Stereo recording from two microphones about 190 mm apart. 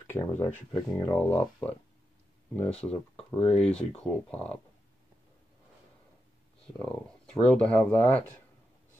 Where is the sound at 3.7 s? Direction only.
5° left (ahead or behind).